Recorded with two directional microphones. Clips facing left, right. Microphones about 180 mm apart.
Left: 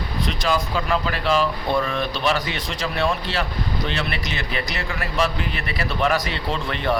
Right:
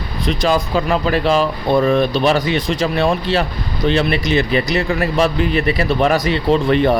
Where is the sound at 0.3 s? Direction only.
20° right (ahead or behind).